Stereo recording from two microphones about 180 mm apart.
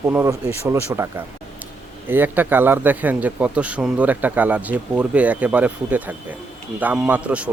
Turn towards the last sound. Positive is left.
turn(degrees=-5)  # may be behind; listen again after turning